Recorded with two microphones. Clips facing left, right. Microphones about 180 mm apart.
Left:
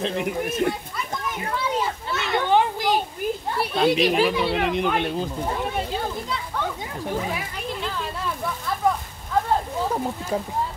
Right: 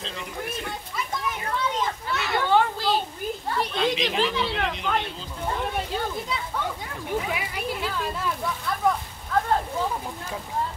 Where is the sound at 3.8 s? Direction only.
10° left (ahead or behind).